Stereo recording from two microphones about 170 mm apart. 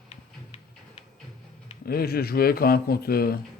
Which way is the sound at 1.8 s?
65° left (ahead or behind).